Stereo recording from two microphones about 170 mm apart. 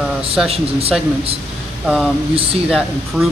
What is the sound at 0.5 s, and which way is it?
Speech, 35° right (ahead or behind).